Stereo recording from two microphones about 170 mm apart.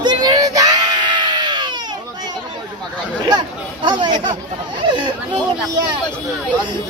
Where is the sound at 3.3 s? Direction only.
25° right (ahead or behind).